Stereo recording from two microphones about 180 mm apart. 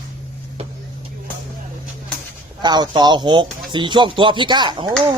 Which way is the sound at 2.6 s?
25° right (ahead or behind).